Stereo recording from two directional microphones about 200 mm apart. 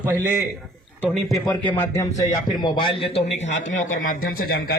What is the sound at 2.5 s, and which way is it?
A man's voice, 20° left (ahead or behind).